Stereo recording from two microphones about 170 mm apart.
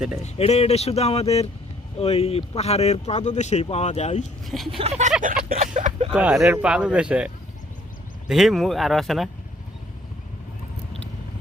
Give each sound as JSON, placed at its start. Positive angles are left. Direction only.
{"t": 0.3, "sound": "speech", "side_deg": 35}
{"t": 4.4, "sound": "speech", "side_deg": 0}
{"t": 4.8, "sound": "a sound", "side_deg": -40}
{"t": 5.2, "sound": "a sound", "side_deg": -55}
{"t": 5.5, "sound": "speech", "side_deg": -40}
{"t": 6.1, "sound": "speech", "side_deg": -5}
{"t": 8.3, "sound": "speech", "side_deg": 0}